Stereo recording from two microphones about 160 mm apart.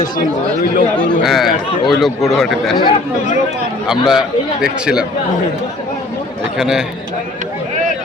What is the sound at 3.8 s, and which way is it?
Speech, centre (ahead or behind).